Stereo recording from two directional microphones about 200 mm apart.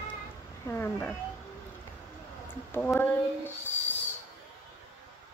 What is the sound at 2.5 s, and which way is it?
Speech, 10° left (ahead or behind).